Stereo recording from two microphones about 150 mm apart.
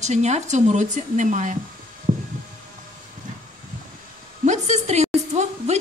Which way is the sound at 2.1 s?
55° right (ahead or behind).